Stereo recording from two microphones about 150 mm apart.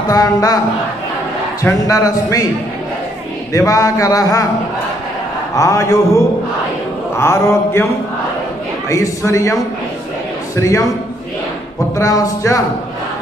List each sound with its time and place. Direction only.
0.1 s a man's voice: 25° left (ahead or behind)
1.6 s a man's voice: 20° left (ahead or behind)
3.5 s a man's voice: 20° left (ahead or behind)
5.5 s a man's voice: 20° left (ahead or behind)
7.2 s mantra: 15° left (ahead or behind)
8.8 s a man's voice: 20° left (ahead or behind)
12.0 s a man's voice: 25° left (ahead or behind)